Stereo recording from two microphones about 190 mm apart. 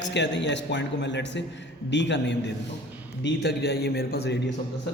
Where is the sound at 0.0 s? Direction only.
65° left (ahead or behind).